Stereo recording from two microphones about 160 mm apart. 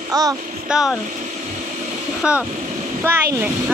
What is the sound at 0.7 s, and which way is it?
Speech, 5° right (ahead or behind).